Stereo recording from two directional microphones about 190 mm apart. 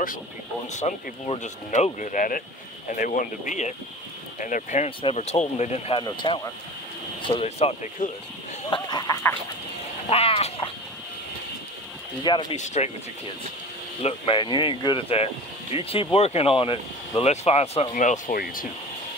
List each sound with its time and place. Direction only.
0.7 s speech: 40° left (ahead or behind)
8.6 s speech: 25° left (ahead or behind)
10.0 s speech: 30° left (ahead or behind)
12.2 s speech: 25° left (ahead or behind)
12.5 s speech: 35° left (ahead or behind)
14.0 s speech: 25° left (ahead or behind); by 18.7 s 50° left (ahead or behind)